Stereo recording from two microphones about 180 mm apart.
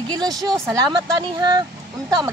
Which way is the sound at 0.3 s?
Centre (ahead or behind).